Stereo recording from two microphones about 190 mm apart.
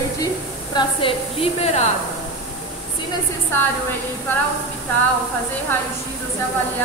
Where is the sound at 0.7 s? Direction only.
30° left (ahead or behind).